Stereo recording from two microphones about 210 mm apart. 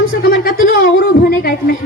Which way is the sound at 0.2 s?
45° left (ahead or behind).